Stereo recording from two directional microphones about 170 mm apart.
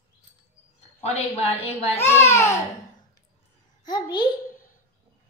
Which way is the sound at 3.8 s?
25° left (ahead or behind).